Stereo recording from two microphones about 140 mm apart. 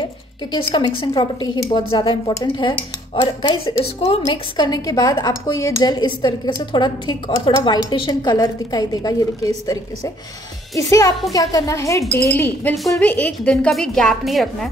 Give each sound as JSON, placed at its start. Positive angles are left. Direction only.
{"t": 0.7, "sound": "a woman's voice", "side_deg": 35}
{"t": 3.8, "sound": "a woman's voice", "side_deg": 45}
{"t": 4.6, "sound": "a woman's voice", "side_deg": 25}